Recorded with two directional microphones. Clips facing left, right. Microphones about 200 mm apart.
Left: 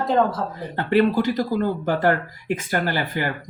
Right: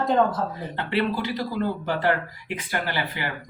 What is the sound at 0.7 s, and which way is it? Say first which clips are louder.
Speech: left 8 dB; 45° left (ahead or behind).